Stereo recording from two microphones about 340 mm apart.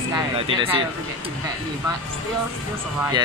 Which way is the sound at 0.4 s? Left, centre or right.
Centre.